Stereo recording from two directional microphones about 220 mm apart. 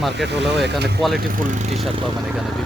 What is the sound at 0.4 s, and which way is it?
Speech, centre (ahead or behind).